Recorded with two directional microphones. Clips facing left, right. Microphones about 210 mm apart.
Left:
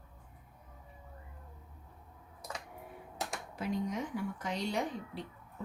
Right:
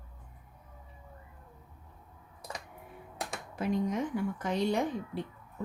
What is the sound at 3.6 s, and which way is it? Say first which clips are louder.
A woman's voice: right 5 dB; 55° right (ahead or behind).